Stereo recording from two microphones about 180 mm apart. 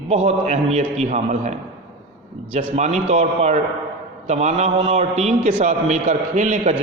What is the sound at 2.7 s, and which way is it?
A man's voice, 40° right (ahead or behind).